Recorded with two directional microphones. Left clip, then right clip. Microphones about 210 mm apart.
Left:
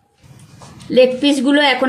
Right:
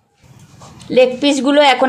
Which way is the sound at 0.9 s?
20° right (ahead or behind).